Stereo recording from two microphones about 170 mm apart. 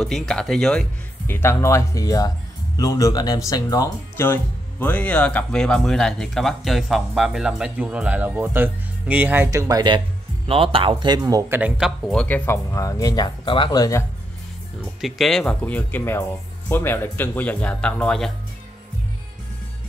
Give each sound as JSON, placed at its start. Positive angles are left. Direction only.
{"t": 0.0, "sound": "speech", "side_deg": 5}
{"t": 12.1, "sound": "speech", "side_deg": 5}
{"t": 15.0, "sound": "speech", "side_deg": 0}